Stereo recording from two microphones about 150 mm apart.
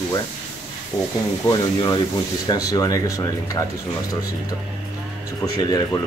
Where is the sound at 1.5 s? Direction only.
30° left (ahead or behind).